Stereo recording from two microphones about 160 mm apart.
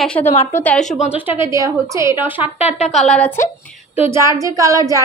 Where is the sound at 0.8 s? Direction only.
50° left (ahead or behind).